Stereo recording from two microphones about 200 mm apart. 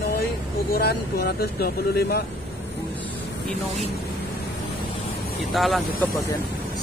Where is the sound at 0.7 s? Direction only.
50° left (ahead or behind).